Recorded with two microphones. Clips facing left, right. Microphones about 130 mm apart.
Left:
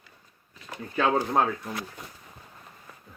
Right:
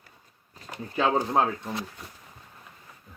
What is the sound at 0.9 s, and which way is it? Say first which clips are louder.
Speech: even; 20° right (ahead or behind).